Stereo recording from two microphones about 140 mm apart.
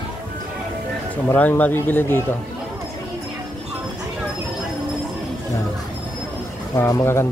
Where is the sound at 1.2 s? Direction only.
15° left (ahead or behind).